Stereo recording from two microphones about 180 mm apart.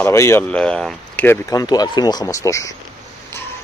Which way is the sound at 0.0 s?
15° left (ahead or behind).